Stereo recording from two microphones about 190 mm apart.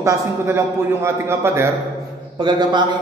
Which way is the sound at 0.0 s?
15° right (ahead or behind).